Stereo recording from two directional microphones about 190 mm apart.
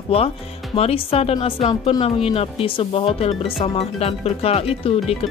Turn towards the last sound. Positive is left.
turn(degrees=30)  # may be behind; listen again after turning